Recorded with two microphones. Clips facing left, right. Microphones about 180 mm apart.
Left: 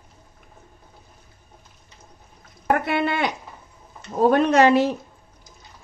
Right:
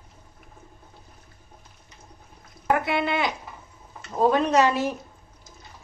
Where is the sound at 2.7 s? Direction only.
60° left (ahead or behind).